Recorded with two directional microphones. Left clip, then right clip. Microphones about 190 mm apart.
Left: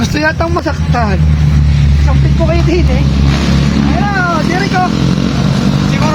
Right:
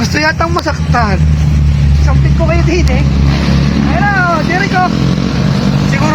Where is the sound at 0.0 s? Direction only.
25° left (ahead or behind).